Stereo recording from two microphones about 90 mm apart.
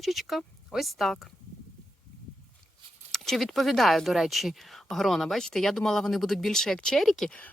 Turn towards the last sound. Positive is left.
turn(degrees=5)  # may be behind; listen again after turning